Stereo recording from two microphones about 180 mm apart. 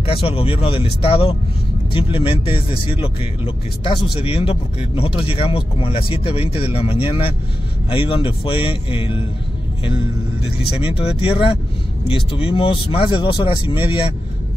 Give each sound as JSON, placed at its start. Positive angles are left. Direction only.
{"t": 0.0, "sound": "speech", "side_deg": 30}
{"t": 10.4, "sound": "speech", "side_deg": 30}